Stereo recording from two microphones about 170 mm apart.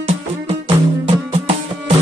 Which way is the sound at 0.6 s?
35° right (ahead or behind).